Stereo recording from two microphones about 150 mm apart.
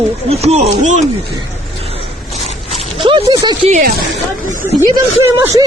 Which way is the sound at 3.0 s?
30° right (ahead or behind).